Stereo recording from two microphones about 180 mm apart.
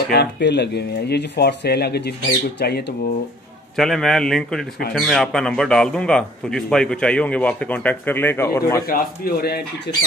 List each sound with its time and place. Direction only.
0.1 s speech: 70° left (ahead or behind)
3.7 s a man's voice: centre (ahead or behind)
8.8 s speech: 55° left (ahead or behind)